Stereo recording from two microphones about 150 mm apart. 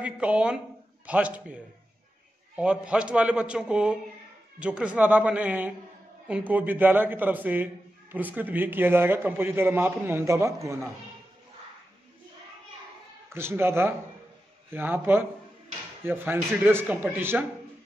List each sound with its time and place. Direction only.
0.0 s a man's voice: 10° right (ahead or behind)
13.3 s a man's voice: 15° right (ahead or behind)